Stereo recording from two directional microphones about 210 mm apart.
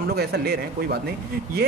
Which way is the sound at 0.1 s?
50° right (ahead or behind).